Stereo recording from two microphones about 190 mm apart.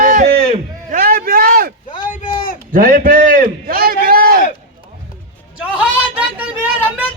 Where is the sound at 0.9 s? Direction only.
50° right (ahead or behind).